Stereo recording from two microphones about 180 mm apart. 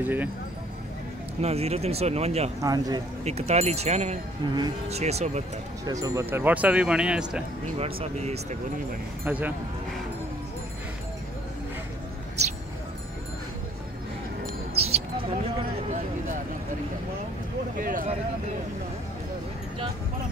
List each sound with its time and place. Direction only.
0.0 s speech: 10° right (ahead or behind)
1.4 s speech: 35° right (ahead or behind)
2.6 s speech: 20° right (ahead or behind)
3.3 s speech: 35° right (ahead or behind)
5.9 s speech: 20° right (ahead or behind)
7.8 s speech: 35° right (ahead or behind)
9.2 s speech: 10° right (ahead or behind)
14.8 s mouse: 35° right (ahead or behind)
17.7 s a sound: 50° right (ahead or behind)